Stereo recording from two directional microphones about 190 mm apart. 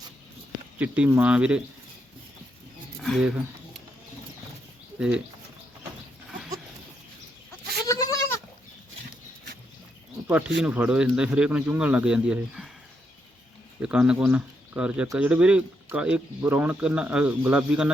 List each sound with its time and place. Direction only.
0.8 s speech: 5° right (ahead or behind)
3.0 s speech: centre (ahead or behind)
4.9 s speech: 5° right (ahead or behind)
7.9 s goat: 20° left (ahead or behind)
10.6 s speech: 5° right (ahead or behind)
13.7 s speech: 5° right (ahead or behind)